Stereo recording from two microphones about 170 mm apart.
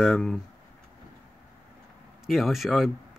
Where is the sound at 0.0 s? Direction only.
Centre (ahead or behind).